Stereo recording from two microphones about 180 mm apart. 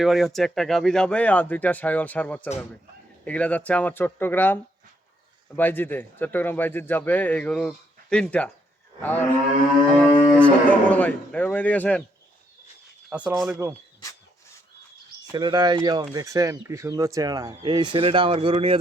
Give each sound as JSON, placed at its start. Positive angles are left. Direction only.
{"t": 0.0, "sound": "speech", "side_deg": 0}
{"t": 9.0, "sound": "cattle", "side_deg": 10}
{"t": 10.3, "sound": "speech", "side_deg": 5}
{"t": 13.1, "sound": "speech", "side_deg": -5}
{"t": 15.3, "sound": "speech", "side_deg": -25}